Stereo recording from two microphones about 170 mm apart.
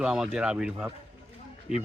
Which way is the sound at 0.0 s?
5° right (ahead or behind).